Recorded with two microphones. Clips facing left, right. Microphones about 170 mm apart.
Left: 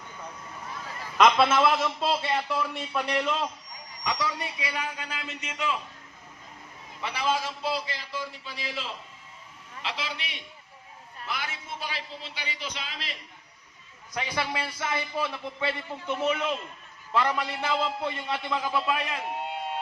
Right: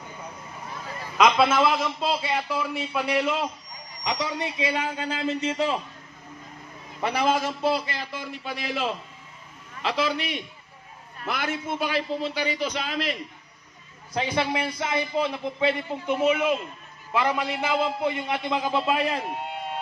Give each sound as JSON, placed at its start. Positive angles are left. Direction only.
{"t": 1.2, "sound": "speech", "side_deg": 0}
{"t": 4.0, "sound": "a man's voice", "side_deg": -20}
{"t": 7.0, "sound": "a man's voice", "side_deg": -45}
{"t": 9.8, "sound": "a man's voice", "side_deg": -45}
{"t": 14.1, "sound": "a man's voice", "side_deg": -25}